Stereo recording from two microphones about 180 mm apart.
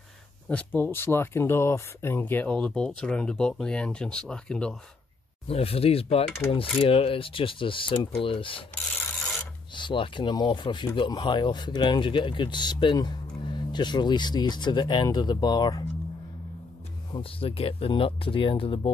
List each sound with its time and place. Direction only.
0.5 s speech: 10° left (ahead or behind)
5.5 s speech: 35° left (ahead or behind)
9.8 s speech: 25° left (ahead or behind)
17.1 s speech: 30° left (ahead or behind)